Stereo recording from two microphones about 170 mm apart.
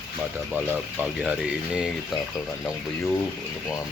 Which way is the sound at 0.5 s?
10° right (ahead or behind).